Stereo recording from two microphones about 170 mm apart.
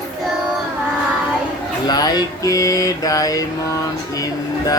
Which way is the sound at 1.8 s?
25° left (ahead or behind).